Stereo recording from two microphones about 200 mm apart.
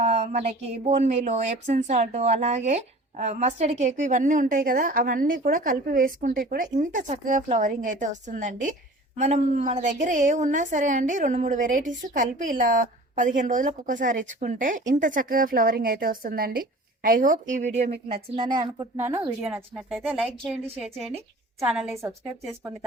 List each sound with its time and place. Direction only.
0.0 s a woman's voice: 35° right (ahead or behind)
19.5 s speech: 5° right (ahead or behind)